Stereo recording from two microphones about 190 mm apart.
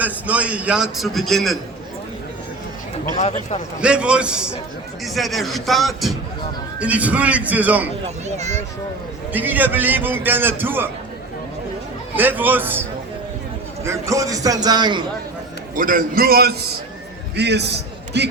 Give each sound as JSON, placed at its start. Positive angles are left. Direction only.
{"t": 0.0, "sound": "a man's voice", "side_deg": -5}
{"t": 3.2, "sound": "a man's voice", "side_deg": 35}
{"t": 3.8, "sound": "a man's voice", "side_deg": -5}
{"t": 8.0, "sound": "a child's voice", "side_deg": -35}
{"t": 9.3, "sound": "a man's voice", "side_deg": -10}
{"t": 12.1, "sound": "a man's voice", "side_deg": -10}
{"t": 13.8, "sound": "a man's voice", "side_deg": -15}
{"t": 15.7, "sound": "a man's voice", "side_deg": -45}
{"t": 17.3, "sound": "a man's voice", "side_deg": -60}